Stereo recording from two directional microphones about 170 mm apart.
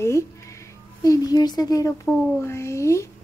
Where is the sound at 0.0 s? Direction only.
15° left (ahead or behind).